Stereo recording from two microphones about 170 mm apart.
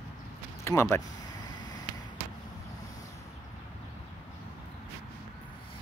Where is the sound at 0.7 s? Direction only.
15° left (ahead or behind).